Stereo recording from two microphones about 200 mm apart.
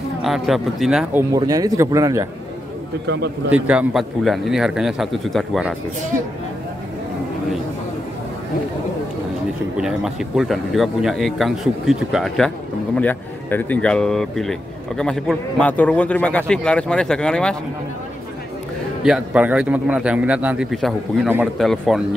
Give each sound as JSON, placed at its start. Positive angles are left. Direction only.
{"t": 0.2, "sound": "speech", "side_deg": 0}
{"t": 1.3, "sound": "a man's voice", "side_deg": -20}
{"t": 3.1, "sound": "a man's voice", "side_deg": -60}
{"t": 3.5, "sound": "speech", "side_deg": -5}
{"t": 9.8, "sound": "speech", "side_deg": -5}
{"t": 19.0, "sound": "speech", "side_deg": -5}